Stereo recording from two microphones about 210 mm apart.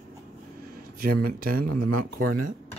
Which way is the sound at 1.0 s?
45° right (ahead or behind).